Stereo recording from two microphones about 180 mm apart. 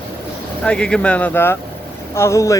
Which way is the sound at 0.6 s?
5° left (ahead or behind).